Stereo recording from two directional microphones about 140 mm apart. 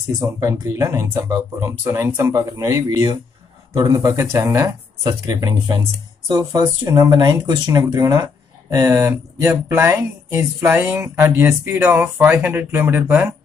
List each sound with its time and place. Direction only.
0.2 s speech: 20° right (ahead or behind)